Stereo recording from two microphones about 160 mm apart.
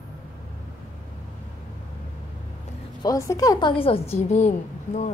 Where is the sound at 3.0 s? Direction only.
20° left (ahead or behind).